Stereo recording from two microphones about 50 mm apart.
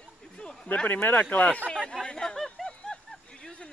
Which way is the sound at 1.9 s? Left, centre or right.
Centre.